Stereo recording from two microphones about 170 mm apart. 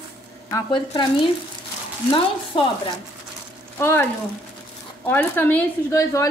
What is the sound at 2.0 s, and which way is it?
Speech, 30° left (ahead or behind).